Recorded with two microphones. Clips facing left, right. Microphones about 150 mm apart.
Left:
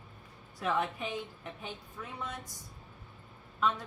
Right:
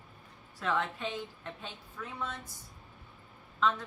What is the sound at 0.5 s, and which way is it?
Speech, 15° left (ahead or behind).